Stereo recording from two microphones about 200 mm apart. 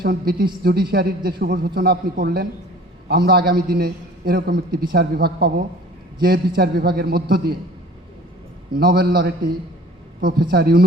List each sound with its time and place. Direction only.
0.0 s a man's voice: 50° right (ahead or behind)
8.7 s a man's voice: 50° right (ahead or behind)